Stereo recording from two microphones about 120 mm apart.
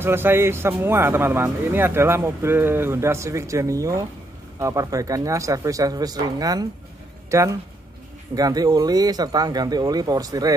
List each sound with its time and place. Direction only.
0.0 s speech: 20° right (ahead or behind)